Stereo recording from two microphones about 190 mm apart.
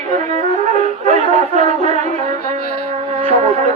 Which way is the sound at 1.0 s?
35° right (ahead or behind).